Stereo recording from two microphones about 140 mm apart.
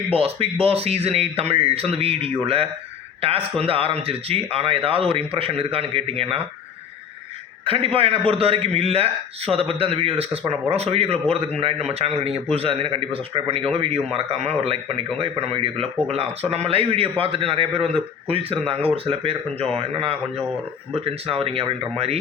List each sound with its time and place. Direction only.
0.1 s a man's voice: 45° right (ahead or behind)
7.6 s a man's voice: 40° right (ahead or behind)